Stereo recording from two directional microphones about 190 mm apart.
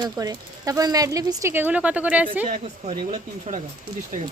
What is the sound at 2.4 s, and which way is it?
Speech, 40° right (ahead or behind).